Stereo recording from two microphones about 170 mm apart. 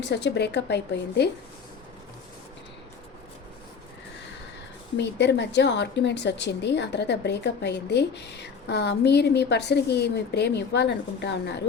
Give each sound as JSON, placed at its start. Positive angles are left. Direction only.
{"t": 0.0, "sound": "a woman's voice", "side_deg": 90}
{"t": 4.9, "sound": "a woman's voice", "side_deg": 90}